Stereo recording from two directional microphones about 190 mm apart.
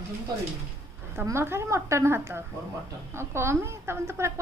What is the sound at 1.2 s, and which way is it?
A woman's voice, 15° right (ahead or behind).